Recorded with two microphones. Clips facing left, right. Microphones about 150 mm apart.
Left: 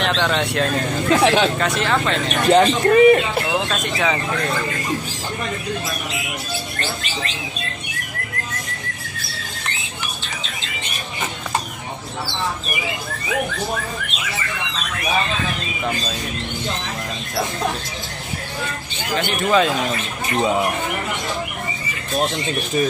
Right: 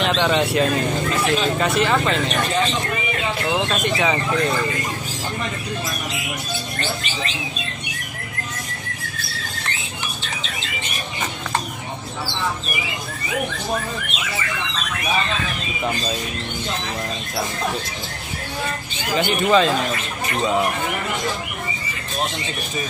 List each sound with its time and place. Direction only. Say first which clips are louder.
0.0 s speech: right 1 dB; 5° right (ahead or behind)
1.2 s speech: left 5 dB; 75° left (ahead or behind)
1.6 s speech: right 1 dB; 5° right (ahead or behind)
2.5 s a man's voice: left 9 dB; 60° left (ahead or behind)
3.5 s speech: right 1 dB; centre (ahead or behind)
19.1 s speech: right 1 dB; centre (ahead or behind)